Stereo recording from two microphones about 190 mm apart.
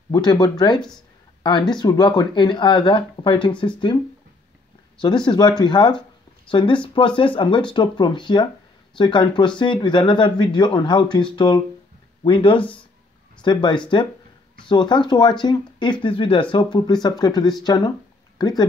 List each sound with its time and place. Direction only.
0.1 s speech: 20° left (ahead or behind)
5.0 s speech: 25° left (ahead or behind)